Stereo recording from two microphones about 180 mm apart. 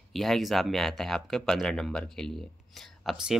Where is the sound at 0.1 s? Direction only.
Centre (ahead or behind).